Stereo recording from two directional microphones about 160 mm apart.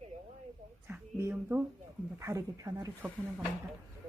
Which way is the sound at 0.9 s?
10° right (ahead or behind).